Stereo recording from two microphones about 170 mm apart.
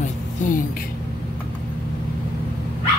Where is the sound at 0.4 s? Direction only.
50° left (ahead or behind).